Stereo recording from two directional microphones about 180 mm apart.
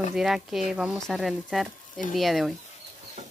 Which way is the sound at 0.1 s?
Centre (ahead or behind).